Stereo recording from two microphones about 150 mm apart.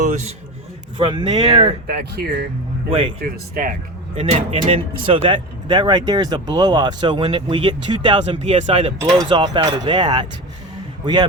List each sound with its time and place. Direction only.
0.0 s a sound: 55° right (ahead or behind)
0.9 s speech: 35° right (ahead or behind)
2.1 s speech: 85° right
4.1 s a man's voice: 40° right (ahead or behind)